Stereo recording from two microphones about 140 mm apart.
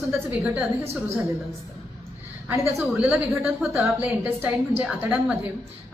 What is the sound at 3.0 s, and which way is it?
A woman's voice, 5° right (ahead or behind).